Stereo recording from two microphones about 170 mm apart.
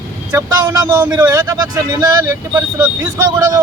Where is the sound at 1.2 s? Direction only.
15° right (ahead or behind).